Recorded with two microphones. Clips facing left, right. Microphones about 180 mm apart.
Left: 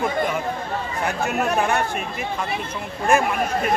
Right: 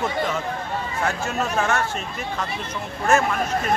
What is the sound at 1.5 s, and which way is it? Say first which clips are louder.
Speech: even; 15° left (ahead or behind).